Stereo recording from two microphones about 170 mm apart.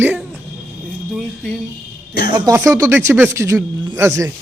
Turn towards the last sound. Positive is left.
turn(degrees=-15)  # may be behind; listen again after turning